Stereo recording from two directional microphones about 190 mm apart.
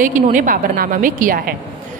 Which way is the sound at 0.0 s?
40° right (ahead or behind).